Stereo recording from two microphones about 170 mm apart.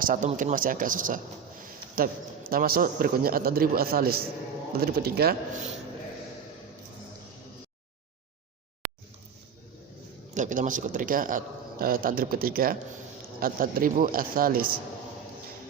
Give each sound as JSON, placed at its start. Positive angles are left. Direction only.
{"t": 0.0, "sound": "a man's voice", "side_deg": -50}
{"t": 8.8, "sound": "a sound", "side_deg": 0}
{"t": 10.3, "sound": "a man's voice", "side_deg": -50}